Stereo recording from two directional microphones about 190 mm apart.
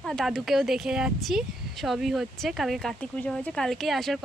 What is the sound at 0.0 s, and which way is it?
Speech, 5° left (ahead or behind).